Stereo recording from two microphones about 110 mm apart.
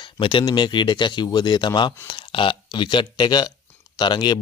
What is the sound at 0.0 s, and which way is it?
Speech, 50° left (ahead or behind).